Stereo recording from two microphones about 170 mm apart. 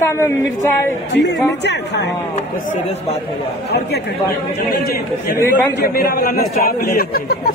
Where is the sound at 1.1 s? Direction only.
85° left.